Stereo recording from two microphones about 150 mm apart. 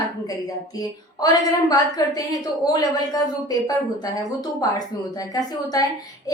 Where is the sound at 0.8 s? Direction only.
25° left (ahead or behind).